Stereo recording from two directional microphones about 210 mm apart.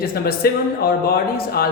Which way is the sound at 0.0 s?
45° left (ahead or behind).